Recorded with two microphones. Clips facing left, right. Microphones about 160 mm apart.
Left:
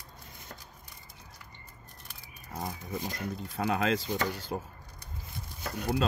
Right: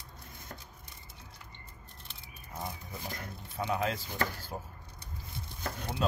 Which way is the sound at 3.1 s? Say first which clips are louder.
Left 5 dB; 90° left.